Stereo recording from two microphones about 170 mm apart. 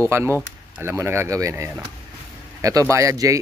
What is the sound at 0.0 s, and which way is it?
Speech, 15° right (ahead or behind).